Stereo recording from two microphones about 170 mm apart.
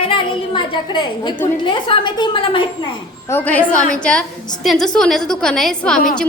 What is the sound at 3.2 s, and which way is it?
A woman's voice, 10° left (ahead or behind).